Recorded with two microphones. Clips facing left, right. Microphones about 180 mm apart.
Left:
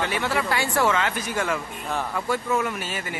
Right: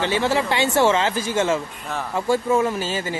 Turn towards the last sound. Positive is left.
turn(degrees=-25)  # may be behind; listen again after turning